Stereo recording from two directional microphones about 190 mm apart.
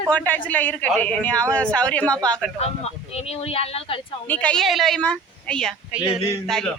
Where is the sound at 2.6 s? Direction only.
35° left (ahead or behind).